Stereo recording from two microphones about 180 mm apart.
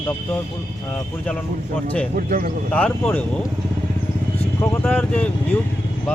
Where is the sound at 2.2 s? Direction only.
50° right (ahead or behind).